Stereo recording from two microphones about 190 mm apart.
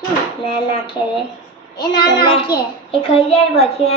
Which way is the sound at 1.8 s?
25° left (ahead or behind).